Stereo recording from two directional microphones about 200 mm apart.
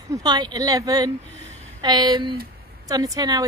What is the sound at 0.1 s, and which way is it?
A woman's voice, 20° right (ahead or behind).